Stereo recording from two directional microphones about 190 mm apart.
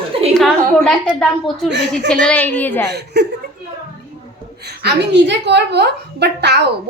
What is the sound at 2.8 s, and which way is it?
Speech, 60° right (ahead or behind).